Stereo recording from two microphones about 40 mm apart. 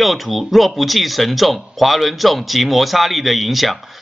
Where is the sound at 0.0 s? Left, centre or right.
Centre.